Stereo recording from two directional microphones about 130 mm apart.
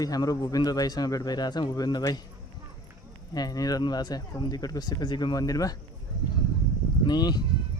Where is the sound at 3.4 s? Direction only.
30° left (ahead or behind).